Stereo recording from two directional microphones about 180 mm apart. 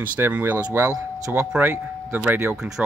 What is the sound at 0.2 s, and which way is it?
Speech, 10° right (ahead or behind).